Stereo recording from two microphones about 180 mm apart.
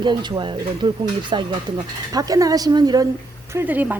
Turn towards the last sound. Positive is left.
turn(degrees=-10)  # may be behind; listen again after turning